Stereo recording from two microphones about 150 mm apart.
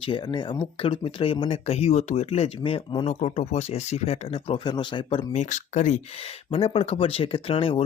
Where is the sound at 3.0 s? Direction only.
45° left (ahead or behind).